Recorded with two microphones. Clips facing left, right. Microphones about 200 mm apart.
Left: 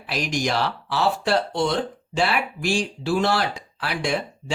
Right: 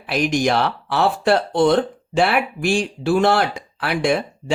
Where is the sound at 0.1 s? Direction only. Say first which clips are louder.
Right 6 dB; 55° right (ahead or behind).